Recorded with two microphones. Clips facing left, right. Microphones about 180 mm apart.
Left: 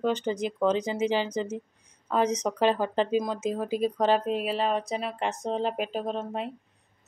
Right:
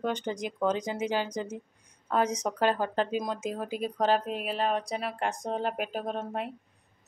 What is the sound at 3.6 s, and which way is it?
Speech, 35° left (ahead or behind).